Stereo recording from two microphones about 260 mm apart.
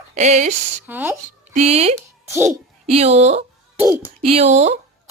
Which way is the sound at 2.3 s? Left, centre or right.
Centre.